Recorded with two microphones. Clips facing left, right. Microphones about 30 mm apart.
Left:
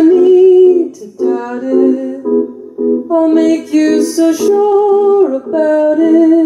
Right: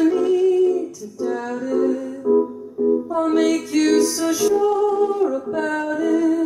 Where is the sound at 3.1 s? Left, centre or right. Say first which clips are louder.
Left 10 dB; centre.